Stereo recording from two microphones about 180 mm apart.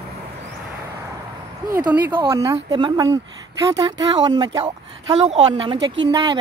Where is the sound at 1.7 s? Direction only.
15° right (ahead or behind).